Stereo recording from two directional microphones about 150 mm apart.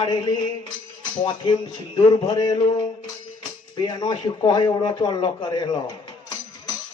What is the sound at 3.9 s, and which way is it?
Speech, 30° left (ahead or behind).